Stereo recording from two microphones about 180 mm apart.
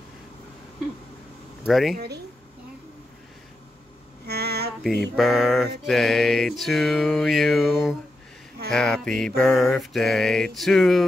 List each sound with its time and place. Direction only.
1.7 s mantra: centre (ahead or behind)
4.3 s a sound: 65° right (ahead or behind)
5.1 s mantra: centre (ahead or behind)